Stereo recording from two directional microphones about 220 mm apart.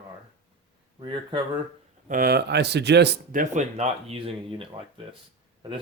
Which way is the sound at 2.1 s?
45° right (ahead or behind).